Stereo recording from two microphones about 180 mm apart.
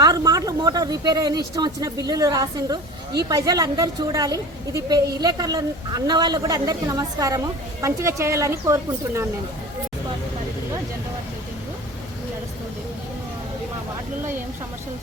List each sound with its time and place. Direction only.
0.0 s a woman's voice: 20° right (ahead or behind)